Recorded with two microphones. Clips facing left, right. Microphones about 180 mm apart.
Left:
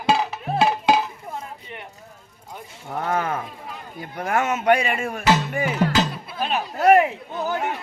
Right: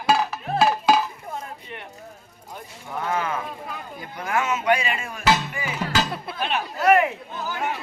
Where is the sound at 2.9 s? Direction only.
40° left (ahead or behind).